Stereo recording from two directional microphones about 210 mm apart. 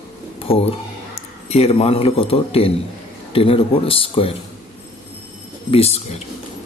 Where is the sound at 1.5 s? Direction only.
30° left (ahead or behind).